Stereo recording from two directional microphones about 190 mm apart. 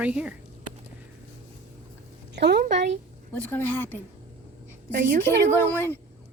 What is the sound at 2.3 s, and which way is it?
Speech, 60° right (ahead or behind).